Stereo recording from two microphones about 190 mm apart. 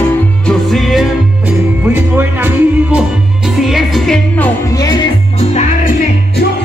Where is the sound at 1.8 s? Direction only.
10° right (ahead or behind); by 4.8 s 10° left (ahead or behind).